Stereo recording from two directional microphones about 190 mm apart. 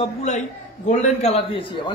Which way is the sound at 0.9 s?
35° left (ahead or behind).